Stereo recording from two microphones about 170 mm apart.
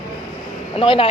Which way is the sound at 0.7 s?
30° left (ahead or behind).